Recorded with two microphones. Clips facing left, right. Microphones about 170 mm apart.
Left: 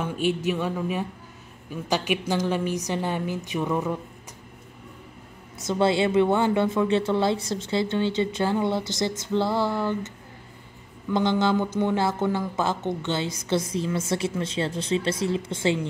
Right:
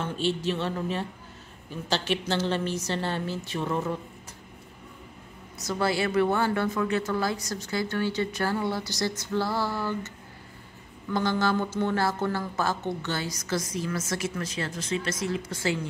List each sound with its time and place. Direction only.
0.0 s a woman's voice: 10° left (ahead or behind)
5.6 s a woman's voice: 25° left (ahead or behind)
11.1 s a woman's voice: 20° left (ahead or behind)